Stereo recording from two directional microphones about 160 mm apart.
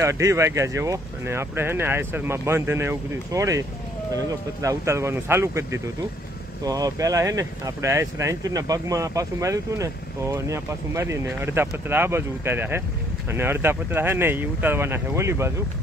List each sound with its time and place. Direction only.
0.0 s speech: 20° right (ahead or behind)